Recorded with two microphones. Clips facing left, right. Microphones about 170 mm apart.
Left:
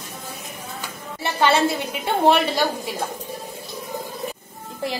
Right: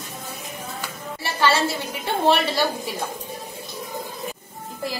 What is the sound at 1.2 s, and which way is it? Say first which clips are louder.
Speech: left 2 dB; 20° left (ahead or behind).